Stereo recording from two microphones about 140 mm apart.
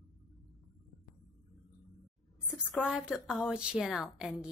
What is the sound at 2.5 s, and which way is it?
A woman's voice, 5° right (ahead or behind).